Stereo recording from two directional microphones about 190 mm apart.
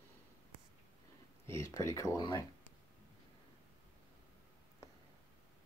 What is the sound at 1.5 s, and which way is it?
Speech, 15° left (ahead or behind).